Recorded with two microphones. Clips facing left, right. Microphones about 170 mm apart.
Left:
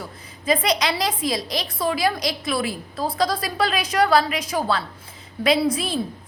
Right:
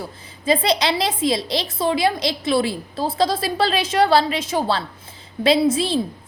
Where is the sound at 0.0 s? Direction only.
30° right (ahead or behind).